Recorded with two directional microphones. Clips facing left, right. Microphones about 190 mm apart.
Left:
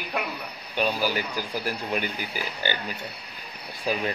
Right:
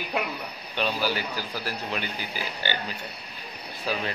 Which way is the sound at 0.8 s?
15° left (ahead or behind).